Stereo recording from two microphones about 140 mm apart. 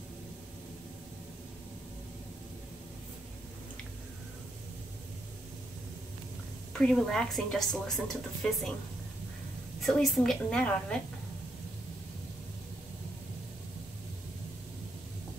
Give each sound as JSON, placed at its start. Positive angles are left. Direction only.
{"t": 6.7, "sound": "a woman's voice", "side_deg": 5}
{"t": 9.8, "sound": "a woman's voice", "side_deg": 5}